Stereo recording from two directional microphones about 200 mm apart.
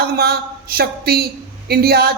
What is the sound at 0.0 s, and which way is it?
A man's voice, 50° right (ahead or behind).